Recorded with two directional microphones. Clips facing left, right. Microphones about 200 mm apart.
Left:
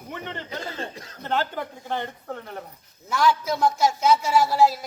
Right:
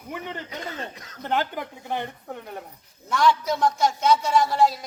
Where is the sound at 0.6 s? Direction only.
30° left (ahead or behind).